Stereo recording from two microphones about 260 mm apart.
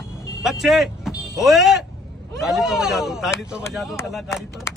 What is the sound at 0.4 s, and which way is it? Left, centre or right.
A man's voice, centre.